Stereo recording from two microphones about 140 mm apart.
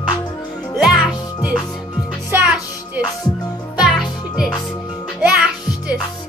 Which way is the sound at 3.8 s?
5° right (ahead or behind).